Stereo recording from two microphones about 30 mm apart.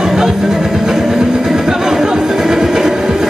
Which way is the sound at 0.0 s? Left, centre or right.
Centre.